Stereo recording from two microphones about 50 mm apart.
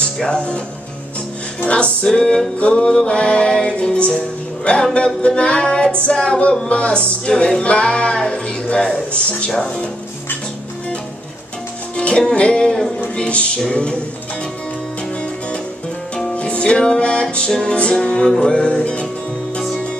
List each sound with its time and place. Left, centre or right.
0.0 s speech: centre
1.7 s music: centre
2.6 s speech: left
12.0 s speech: centre
16.3 s music: left
17.5 s music: centre
17.7 s speech: left